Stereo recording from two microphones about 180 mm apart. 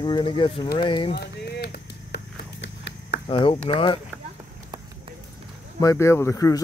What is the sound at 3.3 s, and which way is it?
Speech, 30° left (ahead or behind).